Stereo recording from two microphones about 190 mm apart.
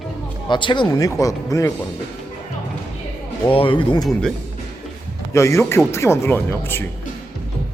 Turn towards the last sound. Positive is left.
turn(degrees=10)  # may be behind; listen again after turning